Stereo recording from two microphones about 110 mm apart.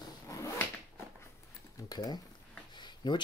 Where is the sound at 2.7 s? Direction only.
45° left (ahead or behind).